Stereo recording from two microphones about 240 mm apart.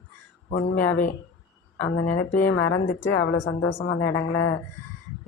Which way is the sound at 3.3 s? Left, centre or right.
Left.